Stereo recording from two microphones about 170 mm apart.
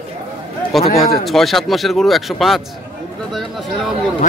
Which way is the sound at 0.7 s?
Centre (ahead or behind).